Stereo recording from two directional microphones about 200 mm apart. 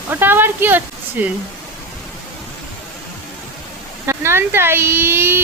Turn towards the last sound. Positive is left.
turn(degrees=-10)  # may be behind; listen again after turning